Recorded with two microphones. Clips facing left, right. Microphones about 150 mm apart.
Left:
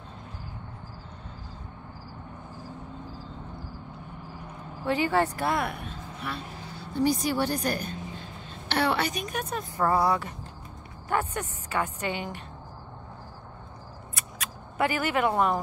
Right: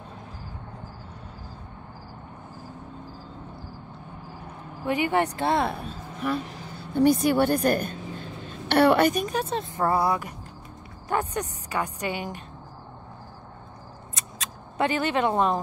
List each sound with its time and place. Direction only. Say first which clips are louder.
4.8 s a woman's voice: right 1 dB; 15° right (ahead or behind)
7.0 s a woman's voice: right 5 dB; 55° right (ahead or behind)
9.3 s a woman's voice: right 5 dB; 25° right (ahead or behind)
10.0 s a woman's voice: even; 15° right (ahead or behind)
14.1 s scissors: even; 20° right (ahead or behind)